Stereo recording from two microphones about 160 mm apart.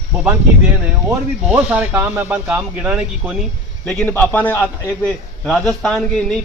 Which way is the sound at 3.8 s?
10° left (ahead or behind).